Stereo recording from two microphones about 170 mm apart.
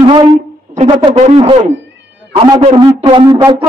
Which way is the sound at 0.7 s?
35° right (ahead or behind).